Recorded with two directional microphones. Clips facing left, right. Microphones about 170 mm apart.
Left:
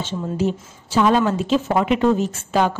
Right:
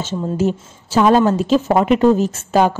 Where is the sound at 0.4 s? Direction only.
45° right (ahead or behind).